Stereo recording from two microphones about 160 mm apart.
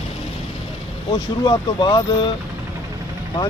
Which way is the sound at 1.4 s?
30° left (ahead or behind).